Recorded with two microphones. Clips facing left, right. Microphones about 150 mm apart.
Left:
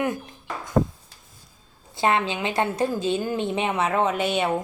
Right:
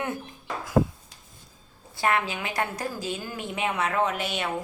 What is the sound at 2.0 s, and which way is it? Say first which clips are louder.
A woman's voice: left 4 dB; 25° left (ahead or behind).